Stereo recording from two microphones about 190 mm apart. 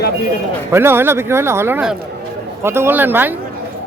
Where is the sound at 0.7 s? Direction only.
10° right (ahead or behind).